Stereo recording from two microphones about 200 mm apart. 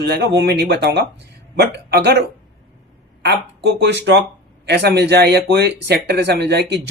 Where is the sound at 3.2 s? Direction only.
55° right (ahead or behind).